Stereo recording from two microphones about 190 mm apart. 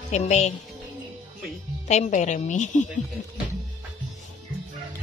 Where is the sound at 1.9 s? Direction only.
40° left (ahead or behind).